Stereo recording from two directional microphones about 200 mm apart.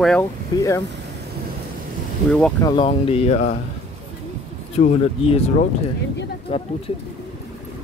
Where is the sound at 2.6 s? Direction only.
25° left (ahead or behind).